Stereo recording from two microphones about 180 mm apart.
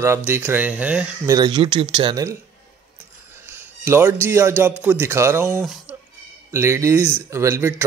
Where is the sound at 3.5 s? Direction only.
10° right (ahead or behind).